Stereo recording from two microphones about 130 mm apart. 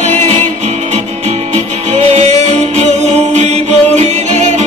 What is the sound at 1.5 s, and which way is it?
Music, 60° right (ahead or behind).